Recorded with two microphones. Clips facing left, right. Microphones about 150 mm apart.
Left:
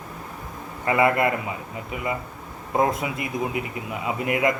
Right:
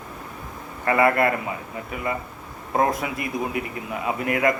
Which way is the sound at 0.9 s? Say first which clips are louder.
Right 1 dB; 20° left (ahead or behind).